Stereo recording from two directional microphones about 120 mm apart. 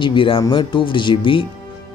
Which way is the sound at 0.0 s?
45° left (ahead or behind).